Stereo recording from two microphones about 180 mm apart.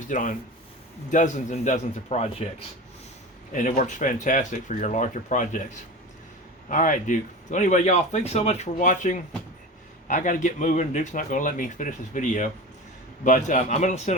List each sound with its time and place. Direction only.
0.1 s speech: 45° left (ahead or behind)
6.7 s a man's voice: 45° left (ahead or behind)